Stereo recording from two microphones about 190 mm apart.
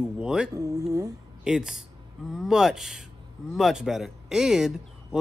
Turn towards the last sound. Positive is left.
turn(degrees=0)  # may be behind; listen again after turning